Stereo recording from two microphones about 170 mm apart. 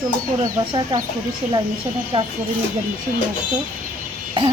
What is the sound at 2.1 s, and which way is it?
Speech, 30° right (ahead or behind).